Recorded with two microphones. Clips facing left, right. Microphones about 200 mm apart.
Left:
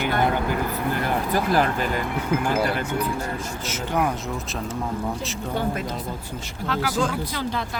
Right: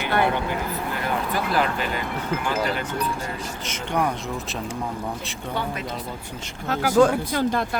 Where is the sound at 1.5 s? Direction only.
45° left (ahead or behind).